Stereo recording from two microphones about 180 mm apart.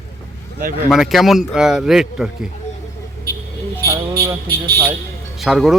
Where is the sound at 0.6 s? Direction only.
50° right (ahead or behind).